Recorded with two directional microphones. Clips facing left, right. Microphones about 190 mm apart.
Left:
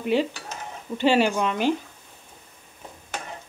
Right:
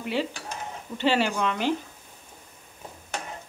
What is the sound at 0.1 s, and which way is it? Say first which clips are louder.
Speech: left 5 dB; 15° left (ahead or behind).